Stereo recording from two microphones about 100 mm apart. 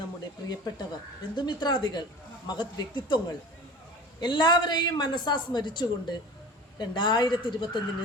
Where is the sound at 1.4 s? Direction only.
50° left (ahead or behind).